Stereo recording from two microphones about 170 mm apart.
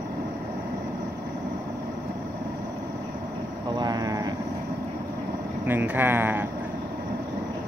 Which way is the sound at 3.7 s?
25° right (ahead or behind).